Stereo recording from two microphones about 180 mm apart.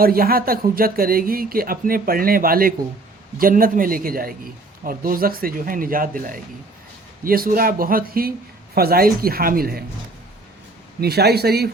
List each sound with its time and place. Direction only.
0.0 s speech: 55° right (ahead or behind)
11.0 s speech: 60° right (ahead or behind)